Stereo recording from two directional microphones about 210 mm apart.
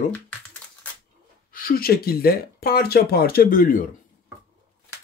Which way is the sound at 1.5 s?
45° left (ahead or behind).